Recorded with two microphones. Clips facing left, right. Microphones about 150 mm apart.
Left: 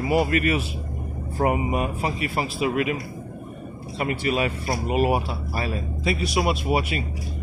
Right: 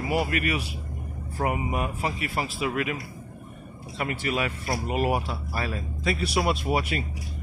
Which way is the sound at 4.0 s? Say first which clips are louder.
Left 4 dB; 25° left (ahead or behind).